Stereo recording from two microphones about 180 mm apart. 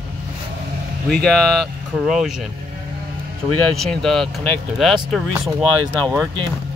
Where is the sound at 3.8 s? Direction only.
5° left (ahead or behind).